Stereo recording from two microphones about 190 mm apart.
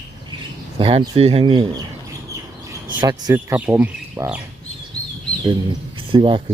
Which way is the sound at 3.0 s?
20° right (ahead or behind).